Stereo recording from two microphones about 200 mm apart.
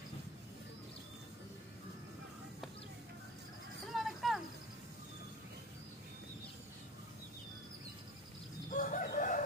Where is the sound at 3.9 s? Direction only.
Centre (ahead or behind).